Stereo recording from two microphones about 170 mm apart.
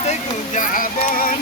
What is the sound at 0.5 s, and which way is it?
Music, 50° left (ahead or behind).